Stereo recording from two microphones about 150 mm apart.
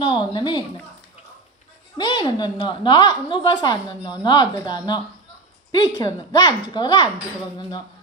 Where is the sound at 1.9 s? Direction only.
30° left (ahead or behind).